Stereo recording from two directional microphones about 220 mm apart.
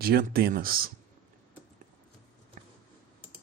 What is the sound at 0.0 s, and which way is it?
Speech, 45° right (ahead or behind).